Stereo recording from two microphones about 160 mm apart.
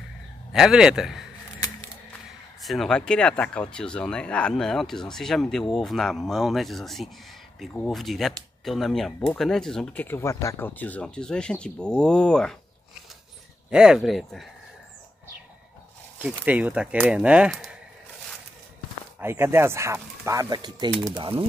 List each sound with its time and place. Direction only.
0.5 s speech: 5° right (ahead or behind)
2.6 s speech: centre (ahead or behind)
13.7 s speech: 5° right (ahead or behind)
16.2 s speech: 10° right (ahead or behind)
19.1 s speech: 15° right (ahead or behind); by 21.5 s 35° right (ahead or behind)